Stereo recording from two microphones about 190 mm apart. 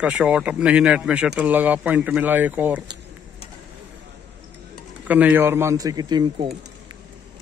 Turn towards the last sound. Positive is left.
turn(degrees=-20)  # may be behind; listen again after turning